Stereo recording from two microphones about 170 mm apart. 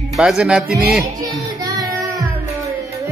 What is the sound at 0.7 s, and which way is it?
Speech, 65° right (ahead or behind).